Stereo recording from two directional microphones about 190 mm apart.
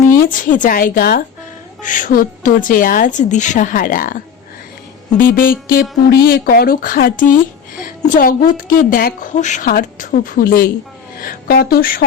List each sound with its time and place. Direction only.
0.3 s a woman's voice: 45° left (ahead or behind)